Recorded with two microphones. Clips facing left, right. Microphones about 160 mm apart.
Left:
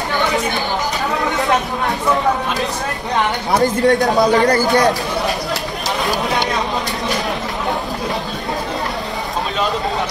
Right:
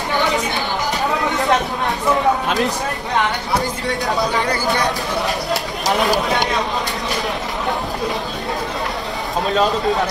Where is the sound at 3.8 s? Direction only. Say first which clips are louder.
Left 7 dB; 45° left (ahead or behind).